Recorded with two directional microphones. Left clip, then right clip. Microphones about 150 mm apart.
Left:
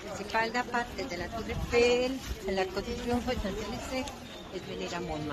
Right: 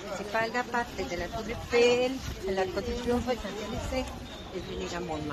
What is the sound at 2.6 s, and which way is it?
Speech, 15° left (ahead or behind).